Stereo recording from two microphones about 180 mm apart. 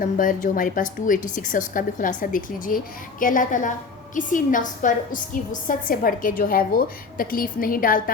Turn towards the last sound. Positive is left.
turn(degrees=50)  # may be behind; listen again after turning